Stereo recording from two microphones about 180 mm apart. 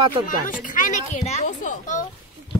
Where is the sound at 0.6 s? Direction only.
45° left (ahead or behind).